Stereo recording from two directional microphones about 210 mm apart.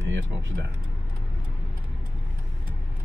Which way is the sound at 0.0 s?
60° right (ahead or behind).